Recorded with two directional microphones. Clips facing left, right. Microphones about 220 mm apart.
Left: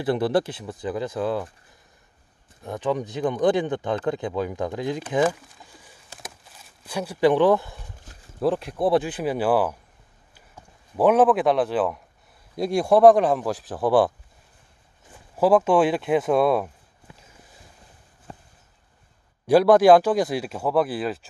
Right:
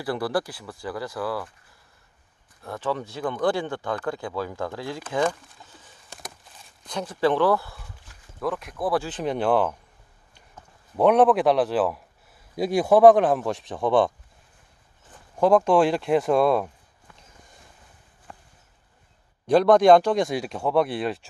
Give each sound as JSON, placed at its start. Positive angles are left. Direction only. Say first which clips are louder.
{"t": 0.0, "sound": "speech", "louder": "left 4 dB", "side_deg": 20}
{"t": 2.6, "sound": "speech", "louder": "left 3 dB", "side_deg": 15}
{"t": 5.2, "sound": "a sound", "louder": "left 1 dB", "side_deg": 10}
{"t": 6.8, "sound": "speech", "louder": "left 3 dB", "side_deg": 10}
{"t": 8.4, "sound": "speech", "louder": "left 5 dB", "side_deg": 30}
{"t": 9.0, "sound": "speech", "louder": "left 1 dB", "side_deg": 10}
{"t": 15.3, "sound": "a sound", "louder": "even", "side_deg": 5}
{"t": 18.3, "sound": "a sound", "louder": "left 4 dB", "side_deg": 30}
{"t": 19.4, "sound": "speech", "louder": "left 1 dB", "side_deg": 5}